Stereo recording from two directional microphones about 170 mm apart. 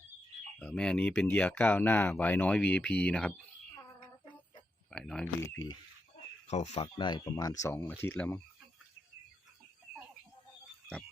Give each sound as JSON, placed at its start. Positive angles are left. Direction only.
{"t": 0.6, "sound": "speech", "side_deg": 5}
{"t": 4.9, "sound": "speech", "side_deg": 5}
{"t": 5.2, "sound": "speech", "side_deg": 15}
{"t": 6.5, "sound": "speech", "side_deg": 40}